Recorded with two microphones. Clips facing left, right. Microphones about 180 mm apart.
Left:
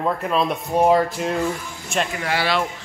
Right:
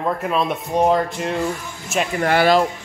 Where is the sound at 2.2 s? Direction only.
50° right (ahead or behind).